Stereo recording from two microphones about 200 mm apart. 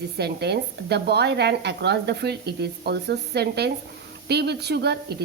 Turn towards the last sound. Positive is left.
turn(degrees=-55)  # may be behind; listen again after turning